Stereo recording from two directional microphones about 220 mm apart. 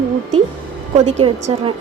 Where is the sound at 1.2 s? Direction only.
25° right (ahead or behind).